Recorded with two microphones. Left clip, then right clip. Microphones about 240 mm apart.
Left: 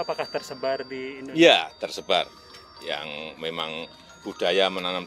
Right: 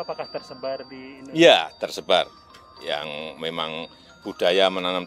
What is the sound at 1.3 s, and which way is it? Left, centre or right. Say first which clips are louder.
Speech: right 2 dB; right.